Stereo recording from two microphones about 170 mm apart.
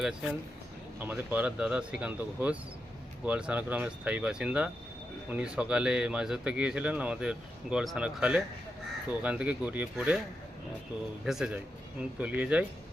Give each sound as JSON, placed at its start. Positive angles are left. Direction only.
{"t": 0.0, "sound": "speech", "side_deg": -5}
{"t": 11.3, "sound": "speech", "side_deg": -5}